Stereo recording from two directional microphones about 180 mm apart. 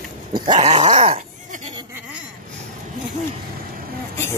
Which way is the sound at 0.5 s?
35° right (ahead or behind).